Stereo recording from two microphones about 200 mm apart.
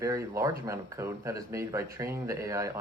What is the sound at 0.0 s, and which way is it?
Speech, 15° right (ahead or behind).